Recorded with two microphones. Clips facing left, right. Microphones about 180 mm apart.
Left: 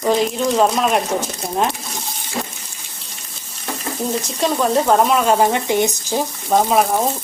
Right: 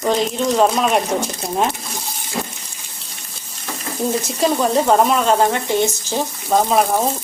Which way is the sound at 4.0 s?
Centre (ahead or behind).